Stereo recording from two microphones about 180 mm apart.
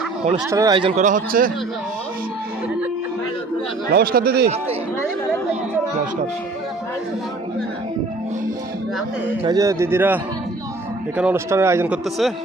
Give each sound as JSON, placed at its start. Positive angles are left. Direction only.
{"t": 0.5, "sound": "speech", "side_deg": -20}
{"t": 0.9, "sound": "a man's voice", "side_deg": -45}
{"t": 3.9, "sound": "speech", "side_deg": -55}
{"t": 9.4, "sound": "a man's voice", "side_deg": -20}
{"t": 11.2, "sound": "a man's voice", "side_deg": -10}